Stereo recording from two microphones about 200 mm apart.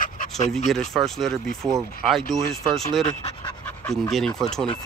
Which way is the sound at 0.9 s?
Centre (ahead or behind).